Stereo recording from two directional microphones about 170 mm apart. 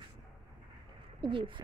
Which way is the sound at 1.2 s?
30° right (ahead or behind).